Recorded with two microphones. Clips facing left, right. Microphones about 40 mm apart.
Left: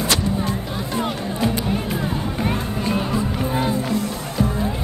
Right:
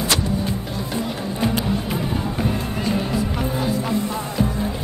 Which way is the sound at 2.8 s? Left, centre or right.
Left.